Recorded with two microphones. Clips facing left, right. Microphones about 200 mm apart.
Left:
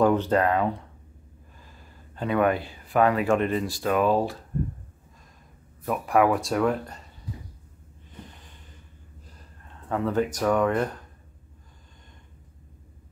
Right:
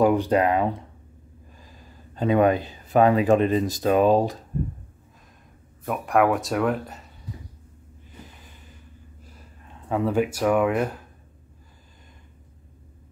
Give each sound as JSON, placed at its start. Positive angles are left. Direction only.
{"t": 0.0, "sound": "speech", "side_deg": -10}
{"t": 5.9, "sound": "speech", "side_deg": 0}
{"t": 9.8, "sound": "speech", "side_deg": -15}